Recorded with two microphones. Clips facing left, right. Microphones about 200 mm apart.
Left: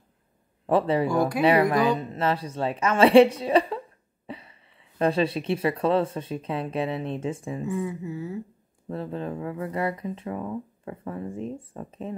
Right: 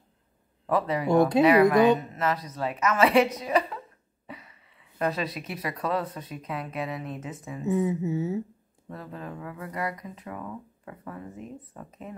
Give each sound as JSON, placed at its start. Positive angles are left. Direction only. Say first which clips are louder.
{"t": 0.7, "sound": "speech", "louder": "left 4 dB", "side_deg": 30}
{"t": 1.0, "sound": "a woman's voice", "louder": "right 3 dB", "side_deg": -25}
{"t": 1.4, "sound": "speech", "louder": "right 1 dB", "side_deg": 25}
{"t": 7.6, "sound": "a woman's voice", "louder": "right 6 dB", "side_deg": -20}
{"t": 8.8, "sound": "speech", "louder": "left 7 dB", "side_deg": 25}